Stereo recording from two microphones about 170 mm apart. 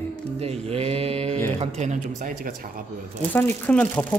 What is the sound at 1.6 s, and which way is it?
Speech, 40° right (ahead or behind).